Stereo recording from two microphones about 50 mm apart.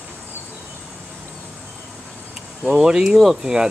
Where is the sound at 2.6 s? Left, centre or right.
Centre.